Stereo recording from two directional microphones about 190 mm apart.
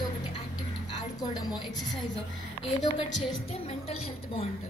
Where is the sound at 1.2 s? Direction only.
20° left (ahead or behind).